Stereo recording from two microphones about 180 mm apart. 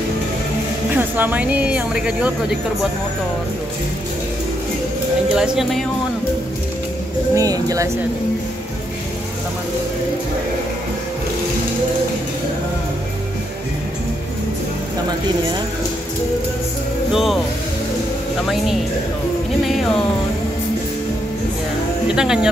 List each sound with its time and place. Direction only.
0.9 s speech: 10° right (ahead or behind)
5.3 s speech: 5° right (ahead or behind)
7.3 s speech: 20° right (ahead or behind)
17.1 s speech: centre (ahead or behind)
19.7 s speech: centre (ahead or behind)
22.0 s speech: 5° right (ahead or behind)